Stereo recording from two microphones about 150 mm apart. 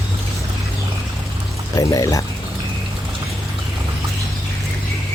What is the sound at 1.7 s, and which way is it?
Speech, 25° left (ahead or behind).